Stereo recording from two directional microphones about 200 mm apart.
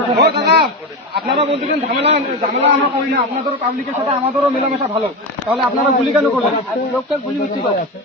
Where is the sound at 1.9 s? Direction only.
60° right (ahead or behind).